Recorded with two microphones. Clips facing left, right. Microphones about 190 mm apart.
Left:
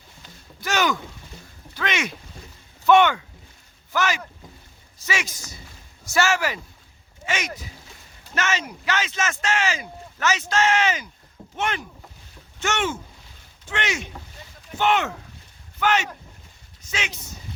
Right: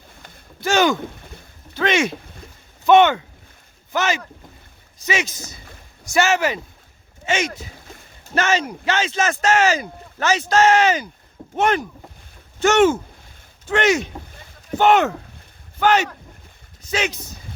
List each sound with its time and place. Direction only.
0.6 s speech: 30° right (ahead or behind)
1.7 s a sound: 30° right (ahead or behind)
2.8 s speech: 25° right (ahead or behind); by 17.2 s 40° right (ahead or behind)